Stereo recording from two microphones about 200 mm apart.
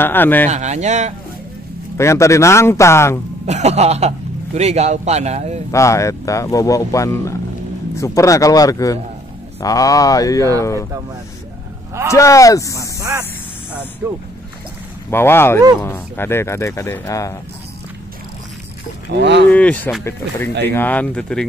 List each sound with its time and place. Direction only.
0.0 s speech: 10° left (ahead or behind)
0.5 s speech: 35° right (ahead or behind)
2.0 s speech: 15° left (ahead or behind)
3.4 s speech: 35° right (ahead or behind)
5.7 s speech: 15° left (ahead or behind)
12.1 s speech: 15° left (ahead or behind)
13.0 s speech: 15° right (ahead or behind)
15.0 s speech: 10° left (ahead or behind)
19.1 s speech: 60° right (ahead or behind)
19.5 s speech: 5° left (ahead or behind)